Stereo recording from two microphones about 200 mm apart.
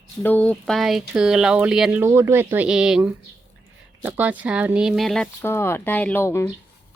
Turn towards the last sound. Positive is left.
turn(degrees=10)  # may be behind; listen again after turning